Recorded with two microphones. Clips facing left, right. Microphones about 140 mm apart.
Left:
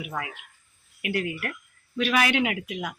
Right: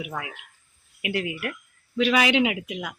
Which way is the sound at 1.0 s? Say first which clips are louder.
Right 1 dB; 15° right (ahead or behind).